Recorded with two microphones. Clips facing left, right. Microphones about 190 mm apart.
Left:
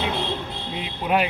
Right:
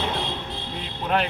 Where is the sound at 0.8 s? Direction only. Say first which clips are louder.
Left 2 dB; 10° left (ahead or behind).